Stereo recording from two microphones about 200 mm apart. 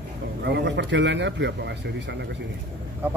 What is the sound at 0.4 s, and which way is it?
Speech, 60° right (ahead or behind).